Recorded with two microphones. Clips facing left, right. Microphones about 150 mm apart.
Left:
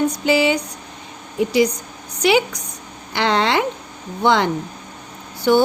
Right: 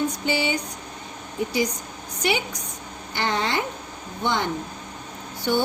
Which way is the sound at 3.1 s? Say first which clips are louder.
Left 7 dB; 90° left.